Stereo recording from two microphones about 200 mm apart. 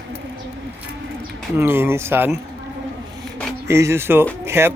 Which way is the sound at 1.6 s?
10° right (ahead or behind).